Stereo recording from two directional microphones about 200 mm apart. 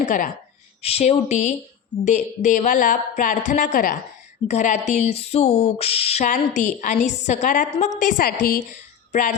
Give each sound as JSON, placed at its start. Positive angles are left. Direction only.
{"t": 0.0, "sound": "speech", "side_deg": 40}